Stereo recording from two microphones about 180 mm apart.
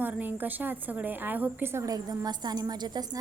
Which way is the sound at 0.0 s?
10° right (ahead or behind).